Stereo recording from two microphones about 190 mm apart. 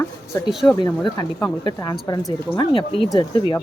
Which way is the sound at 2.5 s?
25° left (ahead or behind).